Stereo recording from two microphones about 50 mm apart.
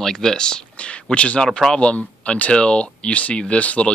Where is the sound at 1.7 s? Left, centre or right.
Left.